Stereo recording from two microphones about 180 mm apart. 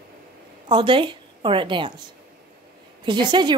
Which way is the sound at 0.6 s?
25° right (ahead or behind).